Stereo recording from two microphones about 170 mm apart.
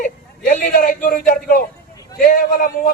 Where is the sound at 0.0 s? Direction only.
55° left (ahead or behind).